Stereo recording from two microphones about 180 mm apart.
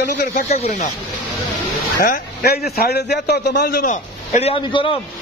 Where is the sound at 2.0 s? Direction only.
55° left (ahead or behind); by 4.9 s 30° left (ahead or behind).